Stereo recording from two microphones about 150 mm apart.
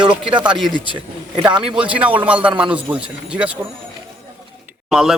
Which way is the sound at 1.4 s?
30° right (ahead or behind).